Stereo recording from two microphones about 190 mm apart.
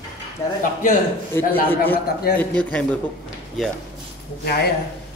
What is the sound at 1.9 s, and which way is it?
Speech, 55° left (ahead or behind).